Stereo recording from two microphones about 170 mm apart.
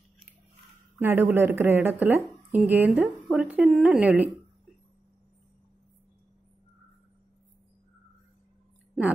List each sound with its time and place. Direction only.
0.9 s speech: 10° right (ahead or behind)